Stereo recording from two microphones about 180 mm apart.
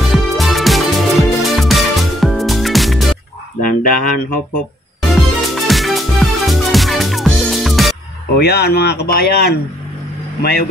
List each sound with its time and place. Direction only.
0.1 s music: centre (ahead or behind)
3.6 s speech: 50° left (ahead or behind)
5.1 s music: centre (ahead or behind)
8.4 s speech: 65° left (ahead or behind)